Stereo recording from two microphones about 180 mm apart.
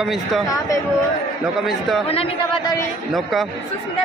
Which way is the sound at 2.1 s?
30° left (ahead or behind).